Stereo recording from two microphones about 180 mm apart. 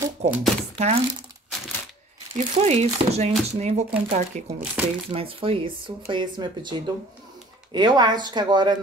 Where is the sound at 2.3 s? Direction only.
40° right (ahead or behind).